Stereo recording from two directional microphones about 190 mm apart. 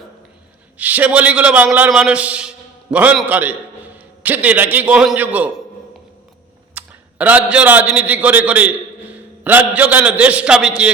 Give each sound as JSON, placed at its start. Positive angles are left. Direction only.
{"t": 0.8, "sound": "a man's voice", "side_deg": -10}
{"t": 6.7, "sound": "a man's voice", "side_deg": -10}